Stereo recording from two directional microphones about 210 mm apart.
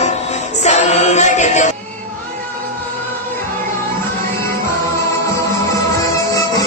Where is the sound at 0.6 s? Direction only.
30° left (ahead or behind).